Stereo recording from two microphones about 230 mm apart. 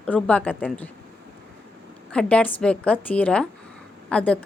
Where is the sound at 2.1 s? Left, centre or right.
Centre.